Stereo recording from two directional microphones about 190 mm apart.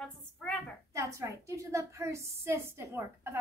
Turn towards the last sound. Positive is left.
turn(degrees=-15)  # may be behind; listen again after turning